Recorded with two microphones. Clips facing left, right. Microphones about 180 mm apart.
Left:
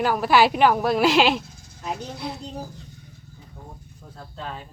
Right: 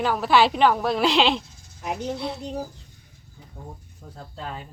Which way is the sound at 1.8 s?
15° right (ahead or behind).